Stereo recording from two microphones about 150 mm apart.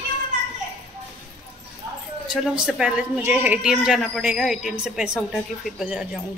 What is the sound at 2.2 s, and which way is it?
A woman's voice, 5° right (ahead or behind).